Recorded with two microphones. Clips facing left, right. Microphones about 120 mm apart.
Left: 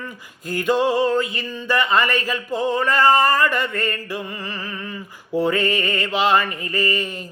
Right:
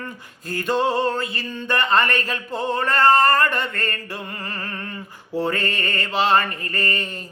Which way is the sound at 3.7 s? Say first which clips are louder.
Left 4 dB; 40° right (ahead or behind).